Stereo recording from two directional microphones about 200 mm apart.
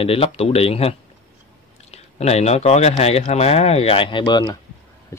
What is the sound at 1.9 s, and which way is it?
Speech, 30° left (ahead or behind).